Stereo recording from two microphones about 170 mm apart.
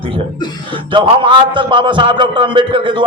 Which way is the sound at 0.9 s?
30° right (ahead or behind).